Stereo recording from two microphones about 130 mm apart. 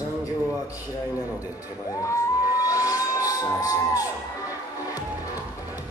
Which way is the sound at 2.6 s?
25° left (ahead or behind).